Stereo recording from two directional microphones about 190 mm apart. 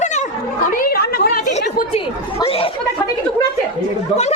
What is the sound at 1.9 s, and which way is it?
Chatter, 30° left (ahead or behind).